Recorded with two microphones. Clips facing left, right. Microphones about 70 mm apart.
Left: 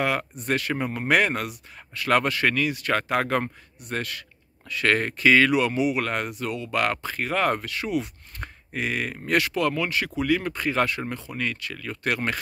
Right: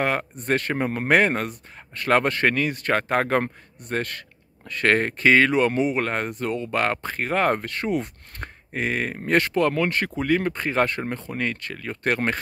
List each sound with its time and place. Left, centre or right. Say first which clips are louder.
0.0 s speech: right 1 dB; right